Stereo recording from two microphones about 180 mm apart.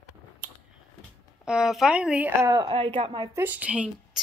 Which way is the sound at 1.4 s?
5° right (ahead or behind).